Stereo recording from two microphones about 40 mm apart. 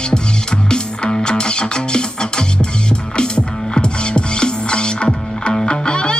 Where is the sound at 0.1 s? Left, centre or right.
Left.